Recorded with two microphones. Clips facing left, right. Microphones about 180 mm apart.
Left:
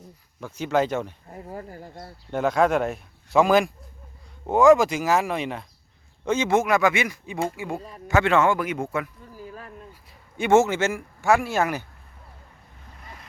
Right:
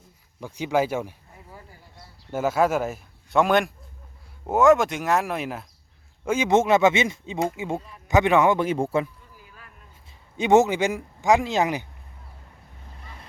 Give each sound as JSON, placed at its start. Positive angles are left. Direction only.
{"t": 0.3, "sound": "speech", "side_deg": -15}
{"t": 1.3, "sound": "speech", "side_deg": 50}
{"t": 2.3, "sound": "speech", "side_deg": -5}
{"t": 6.5, "sound": "speech", "side_deg": -25}
{"t": 7.8, "sound": "speech", "side_deg": 40}
{"t": 8.0, "sound": "speech", "side_deg": -20}
{"t": 9.3, "sound": "a sound", "side_deg": 40}
{"t": 10.3, "sound": "speech", "side_deg": -20}